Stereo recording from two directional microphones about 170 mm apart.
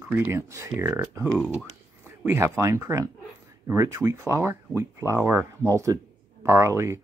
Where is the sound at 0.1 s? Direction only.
15° right (ahead or behind).